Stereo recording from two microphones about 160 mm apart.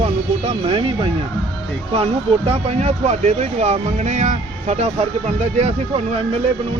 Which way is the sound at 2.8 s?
40° right (ahead or behind).